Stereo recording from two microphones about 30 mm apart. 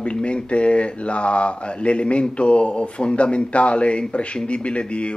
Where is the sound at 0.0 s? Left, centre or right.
Left.